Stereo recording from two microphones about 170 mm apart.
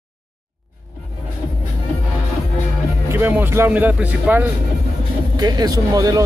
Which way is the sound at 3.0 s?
10° right (ahead or behind).